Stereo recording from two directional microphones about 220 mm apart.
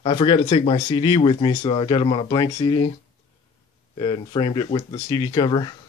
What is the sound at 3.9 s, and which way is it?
Speech, 20° left (ahead or behind).